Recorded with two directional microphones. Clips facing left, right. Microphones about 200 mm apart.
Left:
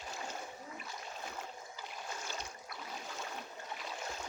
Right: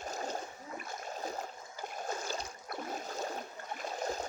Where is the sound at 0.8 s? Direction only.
45° right (ahead or behind).